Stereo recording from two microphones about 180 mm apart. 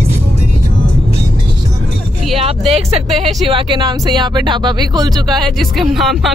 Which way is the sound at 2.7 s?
35° right (ahead or behind).